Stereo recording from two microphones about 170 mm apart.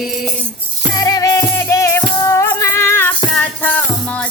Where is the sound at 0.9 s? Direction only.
20° left (ahead or behind).